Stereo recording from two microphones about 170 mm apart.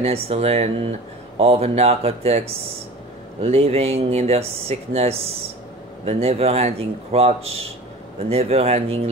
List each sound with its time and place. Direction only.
0.0 s speech: 35° right (ahead or behind)